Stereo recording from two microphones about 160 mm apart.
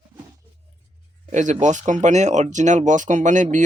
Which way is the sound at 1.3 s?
50° right (ahead or behind).